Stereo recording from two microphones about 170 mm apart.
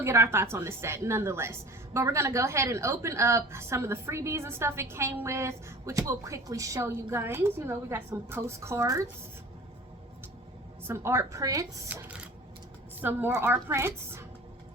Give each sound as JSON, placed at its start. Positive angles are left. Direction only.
{"t": 0.0, "sound": "a woman's voice", "side_deg": -15}
{"t": 10.8, "sound": "a woman's voice", "side_deg": -15}
{"t": 11.9, "sound": "a woman's voice", "side_deg": -10}